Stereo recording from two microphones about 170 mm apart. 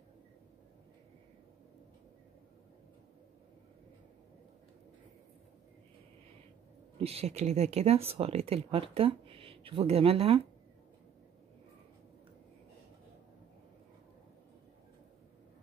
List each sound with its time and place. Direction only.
7.0 s speech: 35° right (ahead or behind)